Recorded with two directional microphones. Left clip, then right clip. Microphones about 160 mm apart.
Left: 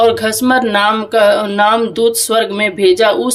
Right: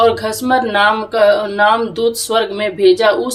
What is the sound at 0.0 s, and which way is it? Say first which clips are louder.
Speech: left 2 dB; 35° left (ahead or behind).